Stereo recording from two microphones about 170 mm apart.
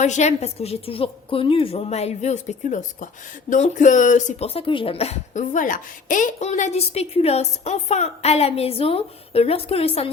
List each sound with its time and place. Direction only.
0.0 s speech: 40° left (ahead or behind)